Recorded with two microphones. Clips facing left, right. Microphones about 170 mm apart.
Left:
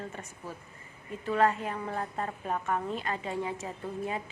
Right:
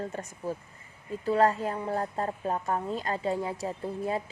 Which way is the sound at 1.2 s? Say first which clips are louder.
Right 3 dB; 35° right (ahead or behind).